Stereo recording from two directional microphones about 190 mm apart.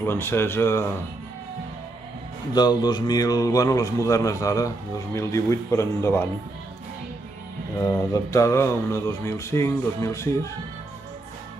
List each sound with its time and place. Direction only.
0.0 s a man's voice: 10° left (ahead or behind)
2.5 s a man's voice: 20° left (ahead or behind)
8.0 s a man's voice: 15° left (ahead or behind)